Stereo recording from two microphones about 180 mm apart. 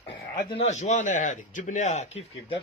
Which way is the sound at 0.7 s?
40° left (ahead or behind).